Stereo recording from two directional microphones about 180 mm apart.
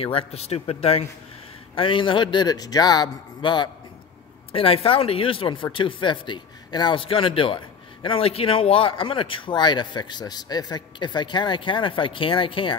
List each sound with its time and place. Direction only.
0.0 s speech: 30° left (ahead or behind)